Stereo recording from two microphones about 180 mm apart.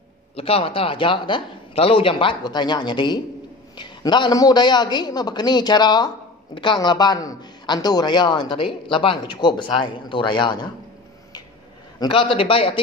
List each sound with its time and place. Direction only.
0.4 s a man's voice: 30° left (ahead or behind)
12.0 s a man's voice: 30° left (ahead or behind)